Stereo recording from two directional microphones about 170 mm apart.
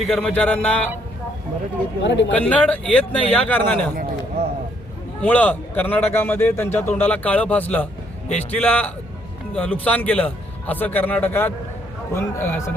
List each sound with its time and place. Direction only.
0.0 s speech: 5° left (ahead or behind)
2.0 s speech: 90° left
2.3 s a man's voice: 10° left (ahead or behind)
5.2 s a man's voice: 10° left (ahead or behind)